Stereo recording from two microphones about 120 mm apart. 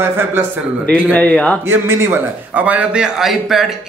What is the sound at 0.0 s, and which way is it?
Speech, 20° right (ahead or behind).